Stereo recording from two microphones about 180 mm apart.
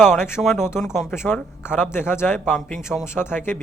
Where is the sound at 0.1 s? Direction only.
15° left (ahead or behind).